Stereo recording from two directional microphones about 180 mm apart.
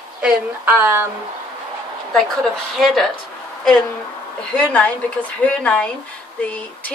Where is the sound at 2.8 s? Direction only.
Centre (ahead or behind).